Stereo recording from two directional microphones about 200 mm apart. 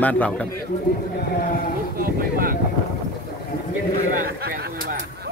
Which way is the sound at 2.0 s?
45° right (ahead or behind).